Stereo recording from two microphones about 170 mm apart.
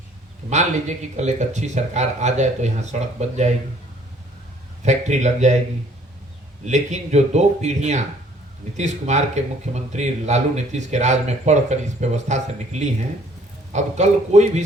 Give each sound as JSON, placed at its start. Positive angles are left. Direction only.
{"t": 0.5, "sound": "speech", "side_deg": -40}
{"t": 4.8, "sound": "speech", "side_deg": -40}
{"t": 6.7, "sound": "speech", "side_deg": -45}